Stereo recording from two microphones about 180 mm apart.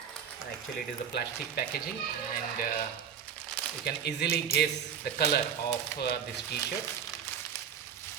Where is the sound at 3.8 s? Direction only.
65° left (ahead or behind).